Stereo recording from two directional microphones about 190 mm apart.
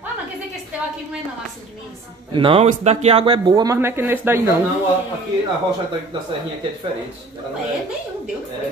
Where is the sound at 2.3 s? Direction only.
25° right (ahead or behind).